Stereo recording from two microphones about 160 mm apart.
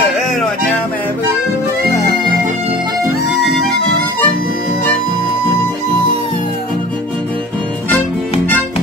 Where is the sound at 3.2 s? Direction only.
90° left.